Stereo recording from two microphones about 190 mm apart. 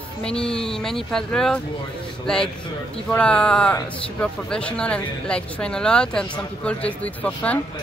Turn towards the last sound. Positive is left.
turn(degrees=5)  # may be behind; listen again after turning